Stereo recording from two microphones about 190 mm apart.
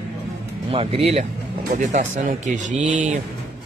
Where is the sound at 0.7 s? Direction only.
30° right (ahead or behind).